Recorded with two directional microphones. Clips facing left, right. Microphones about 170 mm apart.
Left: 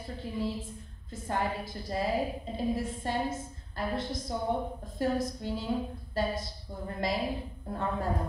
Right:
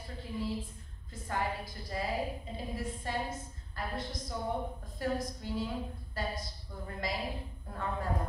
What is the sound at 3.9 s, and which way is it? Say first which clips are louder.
A woman's voice: left 5 dB; 25° left (ahead or behind).